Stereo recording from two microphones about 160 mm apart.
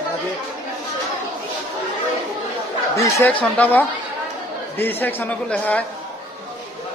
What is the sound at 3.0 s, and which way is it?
Speech, 20° left (ahead or behind).